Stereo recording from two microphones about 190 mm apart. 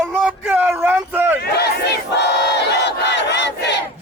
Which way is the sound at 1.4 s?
60° left (ahead or behind).